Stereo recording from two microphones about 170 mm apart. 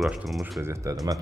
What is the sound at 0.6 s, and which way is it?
Speech, 15° right (ahead or behind).